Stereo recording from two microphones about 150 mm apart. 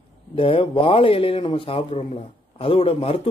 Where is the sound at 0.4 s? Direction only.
35° left (ahead or behind).